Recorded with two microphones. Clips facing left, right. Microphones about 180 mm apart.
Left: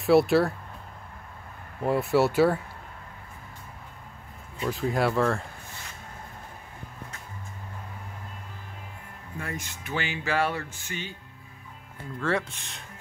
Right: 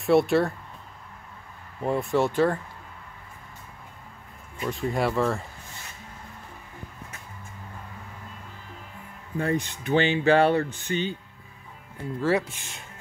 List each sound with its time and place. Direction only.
0.0 s speech: centre (ahead or behind)
1.8 s speech: 5° left (ahead or behind)
4.6 s speech: centre (ahead or behind)
9.4 s speech: 35° right (ahead or behind)
12.2 s speech: 5° right (ahead or behind)